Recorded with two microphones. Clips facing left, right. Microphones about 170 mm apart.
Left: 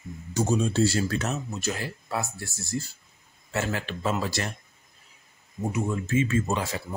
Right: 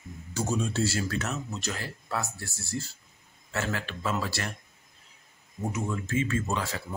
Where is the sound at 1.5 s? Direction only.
15° left (ahead or behind).